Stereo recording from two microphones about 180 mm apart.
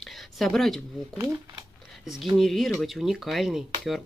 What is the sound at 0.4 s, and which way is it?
Speech, centre (ahead or behind).